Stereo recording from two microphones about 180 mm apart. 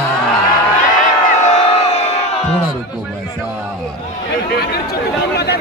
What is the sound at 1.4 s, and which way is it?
Crowd, 35° left (ahead or behind).